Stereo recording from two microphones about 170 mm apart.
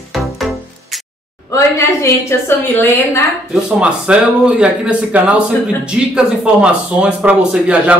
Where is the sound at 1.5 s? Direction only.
15° left (ahead or behind).